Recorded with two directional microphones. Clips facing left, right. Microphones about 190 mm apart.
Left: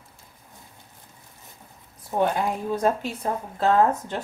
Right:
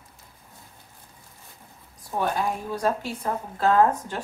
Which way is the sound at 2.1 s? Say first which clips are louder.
Left 3 dB; 20° left (ahead or behind).